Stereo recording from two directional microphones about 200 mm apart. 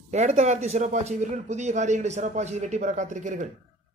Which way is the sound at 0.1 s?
35° right (ahead or behind).